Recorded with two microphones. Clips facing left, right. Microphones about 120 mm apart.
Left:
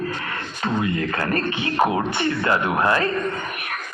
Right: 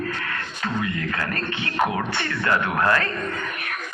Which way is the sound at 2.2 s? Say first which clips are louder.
Left 2 dB; 20° left (ahead or behind).